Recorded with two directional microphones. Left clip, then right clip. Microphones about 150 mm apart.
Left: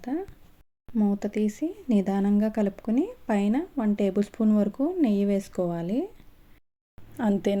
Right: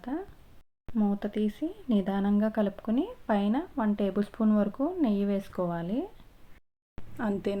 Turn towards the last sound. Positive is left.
turn(degrees=35)  # may be behind; listen again after turning